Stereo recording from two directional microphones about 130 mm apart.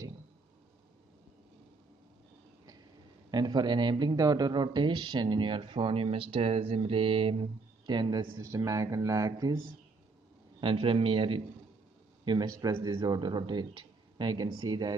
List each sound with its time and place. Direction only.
3.3 s speech: 35° right (ahead or behind)
10.6 s a man's voice: 45° right (ahead or behind)
12.3 s speech: 30° right (ahead or behind)